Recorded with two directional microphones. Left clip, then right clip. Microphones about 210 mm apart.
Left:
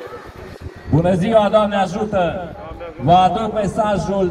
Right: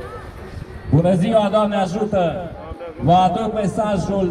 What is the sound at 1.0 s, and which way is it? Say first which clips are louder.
A man's voice: left 2 dB; 50° right (ahead or behind).